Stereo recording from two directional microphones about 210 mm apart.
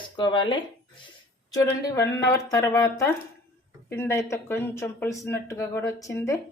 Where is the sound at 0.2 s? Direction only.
20° left (ahead or behind).